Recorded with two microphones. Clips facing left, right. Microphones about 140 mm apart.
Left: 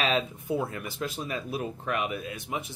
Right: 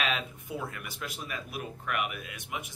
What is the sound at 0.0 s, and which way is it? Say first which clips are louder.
Speech: left 5 dB; 30° left (ahead or behind).